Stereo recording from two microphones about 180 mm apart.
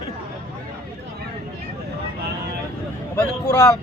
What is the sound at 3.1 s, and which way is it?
Speech, 20° left (ahead or behind).